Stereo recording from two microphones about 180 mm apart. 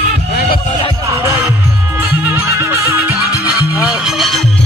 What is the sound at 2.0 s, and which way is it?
Music, 15° right (ahead or behind).